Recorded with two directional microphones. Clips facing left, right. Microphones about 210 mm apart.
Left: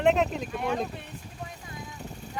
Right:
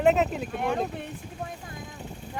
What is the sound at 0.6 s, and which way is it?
Speech, 55° right (ahead or behind).